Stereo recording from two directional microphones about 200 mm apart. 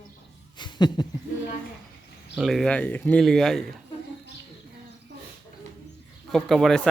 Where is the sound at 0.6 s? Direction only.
20° left (ahead or behind).